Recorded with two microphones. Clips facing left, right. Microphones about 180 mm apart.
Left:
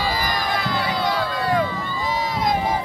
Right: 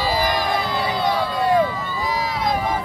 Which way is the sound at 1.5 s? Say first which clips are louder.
Right 4 dB; 10° right (ahead or behind).